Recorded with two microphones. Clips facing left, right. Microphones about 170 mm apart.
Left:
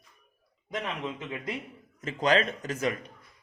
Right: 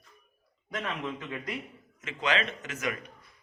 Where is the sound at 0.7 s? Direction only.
20° left (ahead or behind).